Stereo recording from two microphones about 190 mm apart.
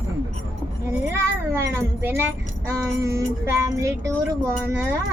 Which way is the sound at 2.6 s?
15° right (ahead or behind).